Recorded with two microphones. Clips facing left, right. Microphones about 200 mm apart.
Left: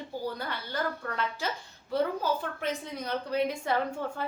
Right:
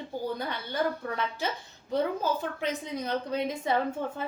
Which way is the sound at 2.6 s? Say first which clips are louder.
Right 2 dB; 20° right (ahead or behind).